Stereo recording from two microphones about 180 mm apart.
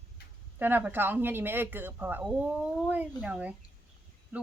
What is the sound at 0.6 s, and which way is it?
Speech, 10° right (ahead or behind).